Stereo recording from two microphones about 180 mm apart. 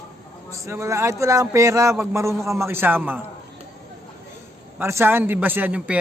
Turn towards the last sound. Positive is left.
turn(degrees=-10)  # may be behind; listen again after turning